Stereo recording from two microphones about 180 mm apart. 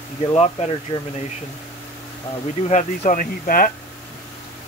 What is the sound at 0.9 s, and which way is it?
Speech, 20° left (ahead or behind).